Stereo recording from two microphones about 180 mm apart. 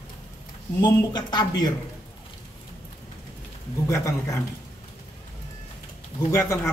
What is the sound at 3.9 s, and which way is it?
Speech, 20° left (ahead or behind).